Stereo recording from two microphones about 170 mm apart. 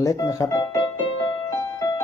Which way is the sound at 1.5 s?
20° left (ahead or behind).